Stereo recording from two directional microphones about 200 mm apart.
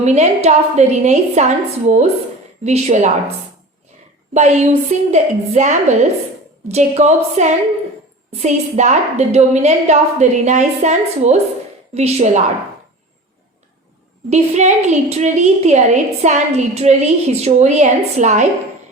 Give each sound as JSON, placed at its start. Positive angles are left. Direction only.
{"t": 0.0, "sound": "a woman's voice", "side_deg": -35}
{"t": 4.4, "sound": "a woman's voice", "side_deg": -35}
{"t": 14.3, "sound": "a woman's voice", "side_deg": -35}